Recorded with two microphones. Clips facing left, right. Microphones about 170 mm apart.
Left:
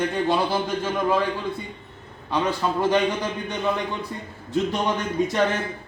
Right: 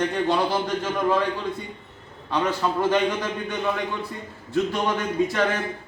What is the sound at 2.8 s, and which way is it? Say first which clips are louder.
Speech: left 1 dB; 15° left (ahead or behind).